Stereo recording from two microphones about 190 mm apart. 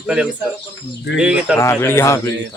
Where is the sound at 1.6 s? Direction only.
15° left (ahead or behind).